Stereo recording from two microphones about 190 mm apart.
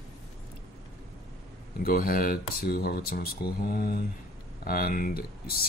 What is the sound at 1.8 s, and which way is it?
Speech, 50° left (ahead or behind).